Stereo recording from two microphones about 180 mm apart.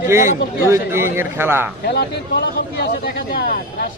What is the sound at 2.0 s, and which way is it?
Speech, 65° left (ahead or behind).